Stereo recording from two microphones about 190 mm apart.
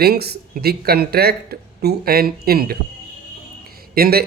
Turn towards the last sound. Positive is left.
turn(degrees=-55)  # may be behind; listen again after turning